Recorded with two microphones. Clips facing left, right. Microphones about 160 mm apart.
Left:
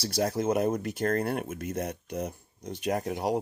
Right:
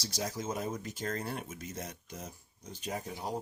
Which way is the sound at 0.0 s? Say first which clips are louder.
Left 10 dB; 60° left (ahead or behind).